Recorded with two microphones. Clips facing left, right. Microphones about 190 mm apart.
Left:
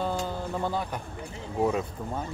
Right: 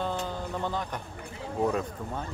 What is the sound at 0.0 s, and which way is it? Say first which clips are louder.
Music: left 2 dB; 10° left (ahead or behind).